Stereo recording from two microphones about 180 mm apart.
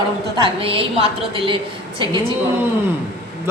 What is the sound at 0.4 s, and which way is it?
A woman's voice, 30° right (ahead or behind).